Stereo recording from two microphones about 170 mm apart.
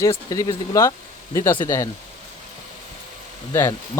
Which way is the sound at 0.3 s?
20° left (ahead or behind).